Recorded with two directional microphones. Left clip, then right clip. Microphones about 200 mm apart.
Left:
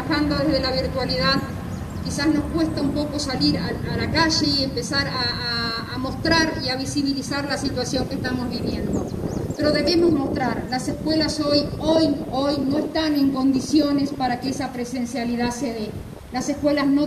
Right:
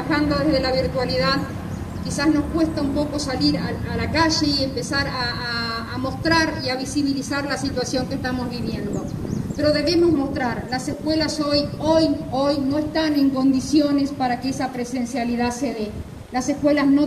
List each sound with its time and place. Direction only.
0.1 s a woman's voice: 15° right (ahead or behind)